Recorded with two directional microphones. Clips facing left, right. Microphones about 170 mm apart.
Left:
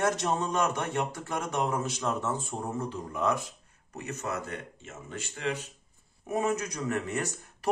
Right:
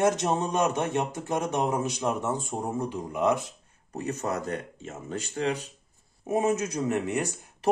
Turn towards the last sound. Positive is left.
turn(degrees=-15)  # may be behind; listen again after turning